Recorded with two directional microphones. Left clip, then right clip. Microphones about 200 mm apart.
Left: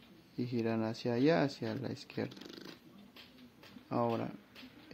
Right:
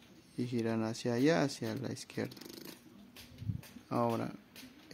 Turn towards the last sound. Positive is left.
turn(degrees=-5)  # may be behind; listen again after turning